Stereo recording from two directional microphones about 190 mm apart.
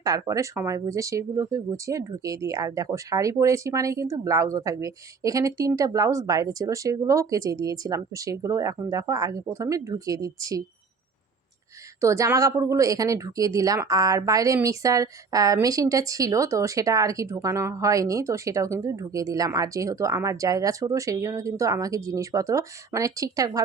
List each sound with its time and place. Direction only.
0.0 s a woman's voice: 20° right (ahead or behind)
11.9 s a woman's voice: 15° right (ahead or behind)